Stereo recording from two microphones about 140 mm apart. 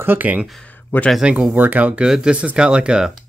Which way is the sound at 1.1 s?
5° right (ahead or behind).